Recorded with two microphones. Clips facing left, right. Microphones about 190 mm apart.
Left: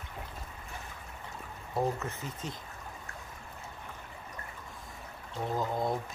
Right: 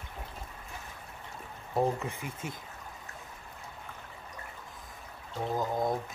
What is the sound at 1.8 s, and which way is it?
Speech, 15° right (ahead or behind).